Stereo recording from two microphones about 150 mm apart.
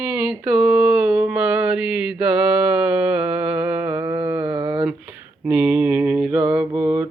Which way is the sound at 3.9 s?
25° right (ahead or behind).